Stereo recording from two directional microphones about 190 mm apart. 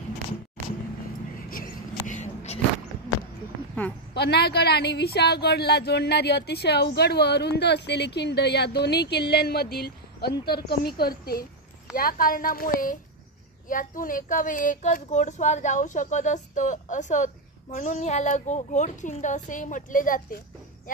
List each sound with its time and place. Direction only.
1.5 s vehicle: 45° left (ahead or behind)
4.1 s a woman's voice: 60° left (ahead or behind); by 20.2 s 45° left (ahead or behind)